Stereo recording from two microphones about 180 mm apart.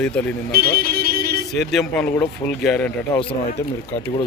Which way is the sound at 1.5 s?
Centre (ahead or behind).